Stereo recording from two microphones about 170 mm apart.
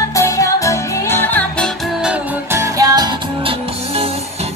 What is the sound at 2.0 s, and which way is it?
Music, 15° right (ahead or behind).